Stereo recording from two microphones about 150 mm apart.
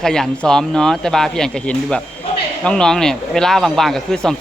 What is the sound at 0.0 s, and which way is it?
Speech, 5° left (ahead or behind).